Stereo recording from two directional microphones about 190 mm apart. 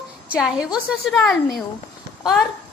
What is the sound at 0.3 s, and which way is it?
A woman's voice, 5° right (ahead or behind).